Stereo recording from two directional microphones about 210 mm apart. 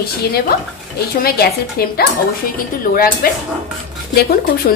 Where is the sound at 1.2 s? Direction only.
50° left (ahead or behind).